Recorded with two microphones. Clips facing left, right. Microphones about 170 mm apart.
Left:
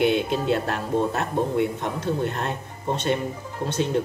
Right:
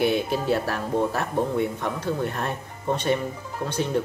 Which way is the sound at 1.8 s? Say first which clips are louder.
Left 1 dB; 20° left (ahead or behind).